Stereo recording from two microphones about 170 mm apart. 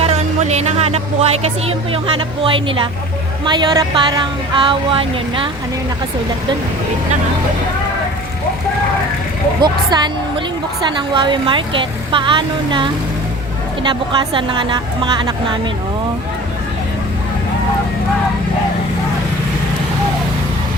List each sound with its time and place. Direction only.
0.0 s speech: 40° right (ahead or behind)
9.6 s speech: 25° right (ahead or behind)